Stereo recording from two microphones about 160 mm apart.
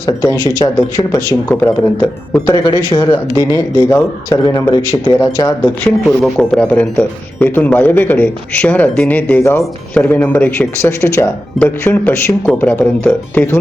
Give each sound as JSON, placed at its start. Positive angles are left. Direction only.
{"t": 0.0, "sound": "speech", "side_deg": 20}
{"t": 5.8, "sound": "speech", "side_deg": 5}